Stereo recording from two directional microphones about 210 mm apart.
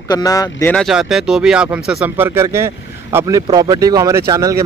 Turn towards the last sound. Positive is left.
turn(degrees=-15)  # may be behind; listen again after turning